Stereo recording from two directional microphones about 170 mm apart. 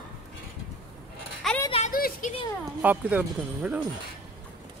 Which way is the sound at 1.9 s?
60° left (ahead or behind).